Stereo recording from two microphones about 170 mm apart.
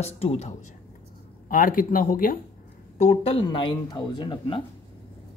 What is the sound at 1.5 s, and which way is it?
Speech, 55° left (ahead or behind).